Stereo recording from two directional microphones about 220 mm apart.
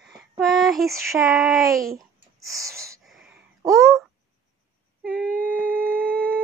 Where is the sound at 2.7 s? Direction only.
15° right (ahead or behind).